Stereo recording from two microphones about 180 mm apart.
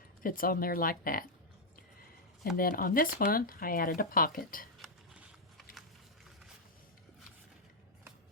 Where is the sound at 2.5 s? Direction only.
50° left (ahead or behind).